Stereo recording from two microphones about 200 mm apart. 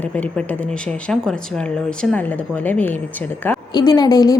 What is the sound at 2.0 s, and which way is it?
Speech, centre (ahead or behind).